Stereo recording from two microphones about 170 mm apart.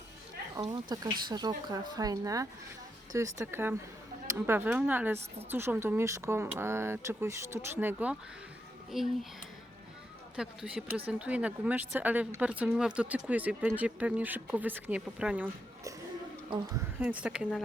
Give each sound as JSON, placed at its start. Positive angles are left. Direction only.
{"t": 0.5, "sound": "speech", "side_deg": -20}
{"t": 10.3, "sound": "speech", "side_deg": -5}
{"t": 16.5, "sound": "speech", "side_deg": -25}
{"t": 17.0, "sound": "speech", "side_deg": -10}